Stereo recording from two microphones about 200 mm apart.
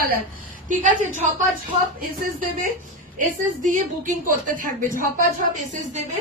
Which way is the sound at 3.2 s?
40° right (ahead or behind).